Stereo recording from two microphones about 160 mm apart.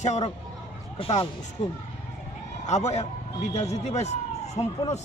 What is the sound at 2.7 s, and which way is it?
Speech, 45° left (ahead or behind).